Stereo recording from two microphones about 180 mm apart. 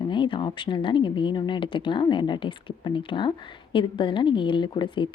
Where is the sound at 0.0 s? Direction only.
25° left (ahead or behind).